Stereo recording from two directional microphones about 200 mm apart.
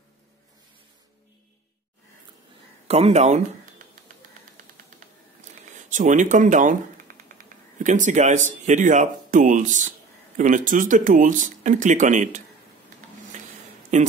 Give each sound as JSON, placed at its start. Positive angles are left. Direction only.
{"t": 2.9, "sound": "speech", "side_deg": -30}
{"t": 5.9, "sound": "speech", "side_deg": -40}
{"t": 13.9, "sound": "speech", "side_deg": -35}